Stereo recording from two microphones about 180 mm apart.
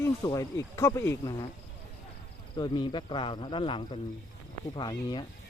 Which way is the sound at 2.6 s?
25° left (ahead or behind).